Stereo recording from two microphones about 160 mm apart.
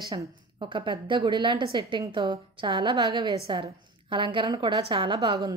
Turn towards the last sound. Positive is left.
turn(degrees=-25)  # may be behind; listen again after turning